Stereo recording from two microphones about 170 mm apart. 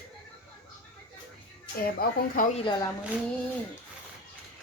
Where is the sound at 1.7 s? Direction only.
60° left (ahead or behind).